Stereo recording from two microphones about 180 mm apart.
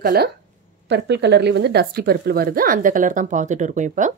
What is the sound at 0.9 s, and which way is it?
Speech, 70° right (ahead or behind).